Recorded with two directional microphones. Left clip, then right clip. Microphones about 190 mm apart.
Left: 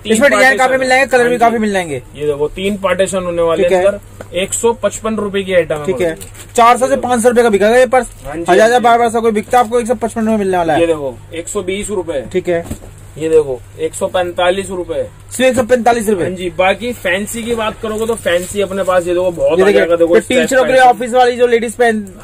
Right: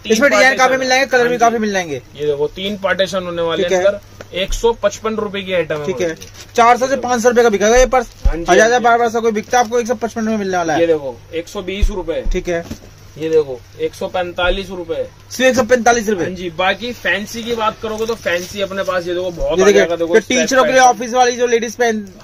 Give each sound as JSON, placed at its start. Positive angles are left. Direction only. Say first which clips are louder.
{"t": 0.1, "sound": "speech", "louder": "left 2 dB", "side_deg": -15}
{"t": 8.5, "sound": "speech", "louder": "left 2 dB", "side_deg": -5}
{"t": 11.5, "sound": "speech", "louder": "left 5 dB", "side_deg": -25}
{"t": 12.3, "sound": "speech", "louder": "left 4 dB", "side_deg": -15}
{"t": 13.7, "sound": "speech", "louder": "left 3 dB", "side_deg": -20}
{"t": 19.5, "sound": "speech", "louder": "right 1 dB", "side_deg": -20}